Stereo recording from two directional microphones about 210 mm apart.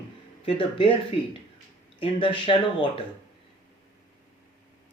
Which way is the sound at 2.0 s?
25° left (ahead or behind).